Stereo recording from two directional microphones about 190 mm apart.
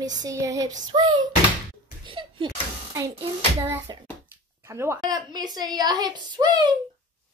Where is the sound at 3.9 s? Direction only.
20° right (ahead or behind).